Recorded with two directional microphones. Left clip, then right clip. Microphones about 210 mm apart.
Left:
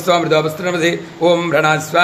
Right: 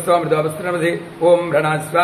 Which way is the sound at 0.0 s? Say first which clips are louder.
Left 2 dB; 50° left (ahead or behind).